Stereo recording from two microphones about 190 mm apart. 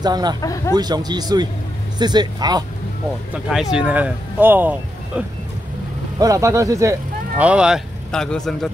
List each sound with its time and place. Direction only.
0.0 s speech: 20° right (ahead or behind)
0.4 s speech: 15° left (ahead or behind)
0.7 s speech: 20° right (ahead or behind)
3.7 s speech: 5° right (ahead or behind)